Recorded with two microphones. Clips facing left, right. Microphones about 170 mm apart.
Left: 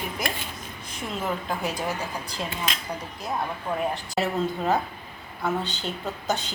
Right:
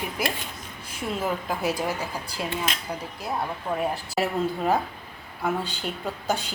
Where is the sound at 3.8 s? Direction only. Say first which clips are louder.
Even; 5° right (ahead or behind).